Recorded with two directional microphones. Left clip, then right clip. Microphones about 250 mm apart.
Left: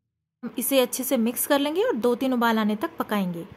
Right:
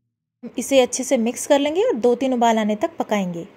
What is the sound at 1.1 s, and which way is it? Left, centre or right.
Speech, left.